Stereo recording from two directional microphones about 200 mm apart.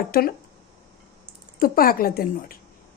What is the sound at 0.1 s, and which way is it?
Speech, 50° left (ahead or behind).